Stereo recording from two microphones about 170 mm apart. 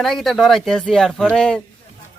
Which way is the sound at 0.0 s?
Centre (ahead or behind).